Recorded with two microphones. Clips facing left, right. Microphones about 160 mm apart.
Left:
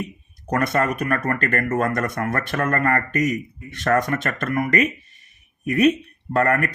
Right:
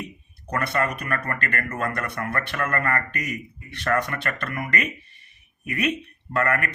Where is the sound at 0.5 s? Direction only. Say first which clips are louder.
Left 4 dB; 45° left (ahead or behind).